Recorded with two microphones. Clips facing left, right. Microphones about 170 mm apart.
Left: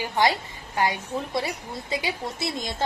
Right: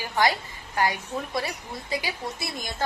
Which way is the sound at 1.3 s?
25° left (ahead or behind).